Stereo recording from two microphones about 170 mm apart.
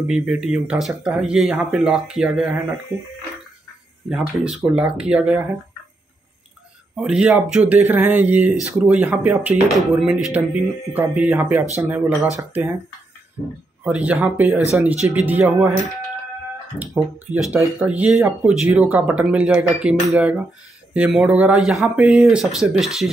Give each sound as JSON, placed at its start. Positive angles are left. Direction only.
{"t": 0.0, "sound": "speech", "side_deg": -5}
{"t": 4.4, "sound": "speech", "side_deg": -5}
{"t": 7.0, "sound": "speech", "side_deg": -5}
{"t": 13.8, "sound": "speech", "side_deg": -5}
{"t": 17.3, "sound": "speech", "side_deg": -10}